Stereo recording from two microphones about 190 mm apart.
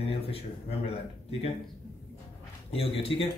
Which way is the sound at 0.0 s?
30° left (ahead or behind).